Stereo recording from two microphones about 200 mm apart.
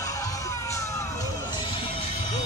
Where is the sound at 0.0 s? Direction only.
15° left (ahead or behind).